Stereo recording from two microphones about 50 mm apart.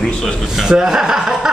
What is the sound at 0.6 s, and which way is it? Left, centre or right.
Speech, centre.